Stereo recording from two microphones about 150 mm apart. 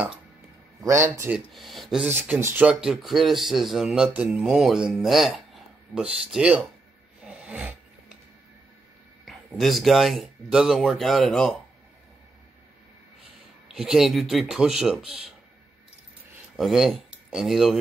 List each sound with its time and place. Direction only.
1.3 s speech: centre (ahead or behind)
2.0 s speech: 15° right (ahead or behind)
7.2 s a sound: 10° right (ahead or behind)
9.2 s speech: centre (ahead or behind)
13.7 s speech: 5° right (ahead or behind)
16.5 s speech: centre (ahead or behind)